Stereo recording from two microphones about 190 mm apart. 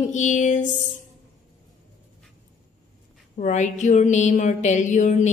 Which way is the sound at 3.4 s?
40° left (ahead or behind).